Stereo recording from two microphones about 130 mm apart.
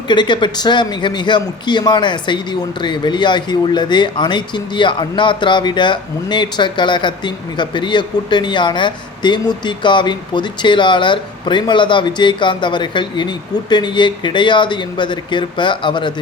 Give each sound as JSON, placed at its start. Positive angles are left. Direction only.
{"t": 0.1, "sound": "a man's voice", "side_deg": 35}